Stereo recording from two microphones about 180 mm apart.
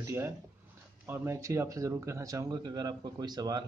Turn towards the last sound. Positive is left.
turn(degrees=-20)  # may be behind; listen again after turning